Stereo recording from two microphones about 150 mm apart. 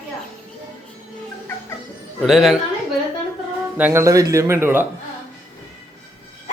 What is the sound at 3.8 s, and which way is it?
Speech, 15° right (ahead or behind).